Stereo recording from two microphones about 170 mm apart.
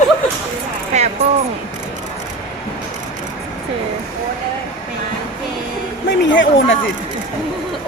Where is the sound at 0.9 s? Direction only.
45° right (ahead or behind).